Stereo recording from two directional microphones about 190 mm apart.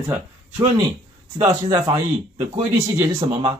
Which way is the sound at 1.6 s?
20° right (ahead or behind).